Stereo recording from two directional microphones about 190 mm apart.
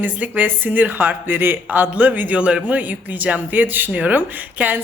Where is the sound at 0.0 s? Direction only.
10° right (ahead or behind).